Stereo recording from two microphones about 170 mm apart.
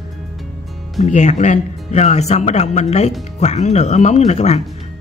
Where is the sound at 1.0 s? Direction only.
45° left (ahead or behind).